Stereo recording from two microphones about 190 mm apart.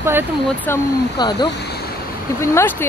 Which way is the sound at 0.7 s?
20° left (ahead or behind).